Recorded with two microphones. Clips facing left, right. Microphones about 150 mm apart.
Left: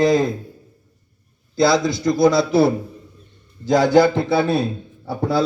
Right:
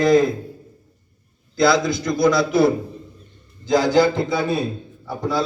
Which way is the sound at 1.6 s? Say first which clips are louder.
Left 1 dB; 25° left (ahead or behind).